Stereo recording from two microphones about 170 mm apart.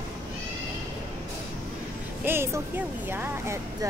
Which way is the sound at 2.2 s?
15° right (ahead or behind).